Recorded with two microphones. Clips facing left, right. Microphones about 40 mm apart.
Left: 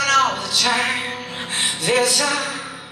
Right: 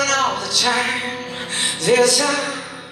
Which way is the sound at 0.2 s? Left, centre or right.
Centre.